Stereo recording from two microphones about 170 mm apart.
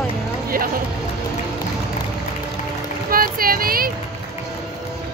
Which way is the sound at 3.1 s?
60° right (ahead or behind).